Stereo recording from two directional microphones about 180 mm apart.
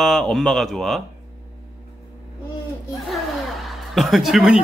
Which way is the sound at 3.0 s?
Centre (ahead or behind).